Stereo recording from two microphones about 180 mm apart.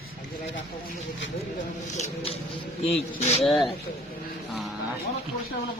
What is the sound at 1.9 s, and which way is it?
Speech, 40° left (ahead or behind).